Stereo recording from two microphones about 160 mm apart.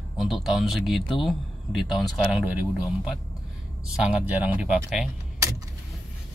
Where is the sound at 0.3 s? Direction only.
Centre (ahead or behind).